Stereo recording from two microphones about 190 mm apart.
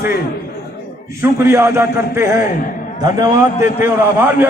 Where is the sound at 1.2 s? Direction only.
15° right (ahead or behind).